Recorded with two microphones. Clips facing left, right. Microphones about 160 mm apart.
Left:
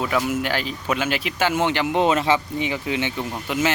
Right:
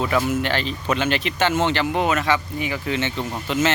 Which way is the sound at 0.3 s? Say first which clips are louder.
Right 1 dB; 10° left (ahead or behind).